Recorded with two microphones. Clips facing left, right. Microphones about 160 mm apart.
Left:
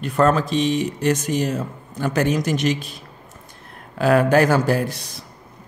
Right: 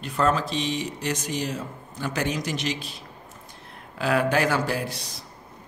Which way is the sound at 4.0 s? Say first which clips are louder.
Left 7 dB; 45° left (ahead or behind).